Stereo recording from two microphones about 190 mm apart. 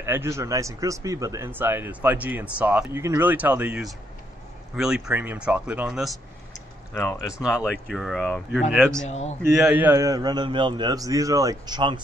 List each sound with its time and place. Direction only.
0.0 s speech: 15° right (ahead or behind)
6.9 s speech: 15° left (ahead or behind)
7.6 s speech: centre (ahead or behind)
9.0 s a man's voice: 35° left (ahead or behind)
9.6 s a man's voice: 5° right (ahead or behind); by 12.0 s 25° right (ahead or behind)